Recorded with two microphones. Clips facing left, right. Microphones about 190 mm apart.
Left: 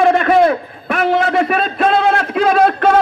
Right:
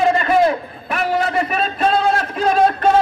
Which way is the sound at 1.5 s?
60° left (ahead or behind).